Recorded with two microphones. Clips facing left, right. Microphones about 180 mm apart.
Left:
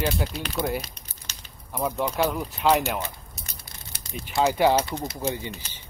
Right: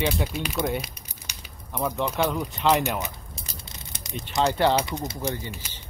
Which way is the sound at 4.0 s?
20° right (ahead or behind).